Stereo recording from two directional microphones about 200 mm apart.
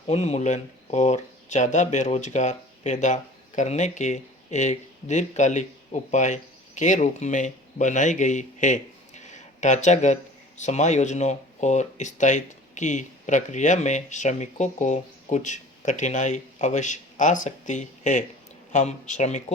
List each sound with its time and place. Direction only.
0.1 s speech: 35° left (ahead or behind)